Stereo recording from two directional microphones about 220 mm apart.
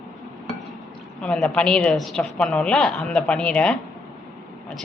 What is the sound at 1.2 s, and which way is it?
A woman's voice, 5° left (ahead or behind).